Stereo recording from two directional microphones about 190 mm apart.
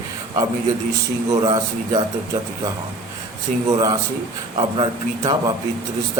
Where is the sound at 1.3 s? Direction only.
20° right (ahead or behind).